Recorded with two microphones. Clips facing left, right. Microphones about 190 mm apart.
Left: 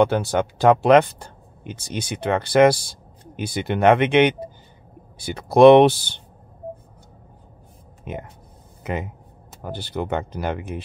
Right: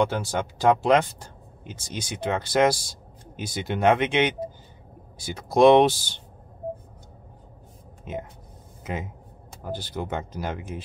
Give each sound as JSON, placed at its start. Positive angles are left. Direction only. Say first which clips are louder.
{"t": 0.0, "sound": "speech", "louder": "left 6 dB", "side_deg": 60}
{"t": 8.1, "sound": "speech", "louder": "left 1 dB", "side_deg": 60}
{"t": 9.6, "sound": "speech", "louder": "left 3 dB", "side_deg": 65}